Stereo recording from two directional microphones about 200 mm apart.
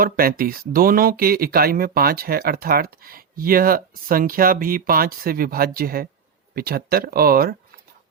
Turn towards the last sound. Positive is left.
turn(degrees=-50)  # may be behind; listen again after turning